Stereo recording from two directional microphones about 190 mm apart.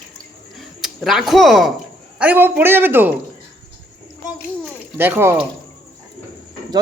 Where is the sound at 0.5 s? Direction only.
Centre (ahead or behind).